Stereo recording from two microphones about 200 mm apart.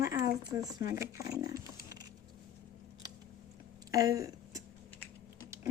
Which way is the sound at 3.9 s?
15° right (ahead or behind).